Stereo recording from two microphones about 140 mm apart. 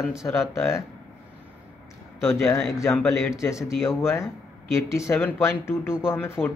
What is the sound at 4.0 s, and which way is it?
A man's voice, 20° left (ahead or behind).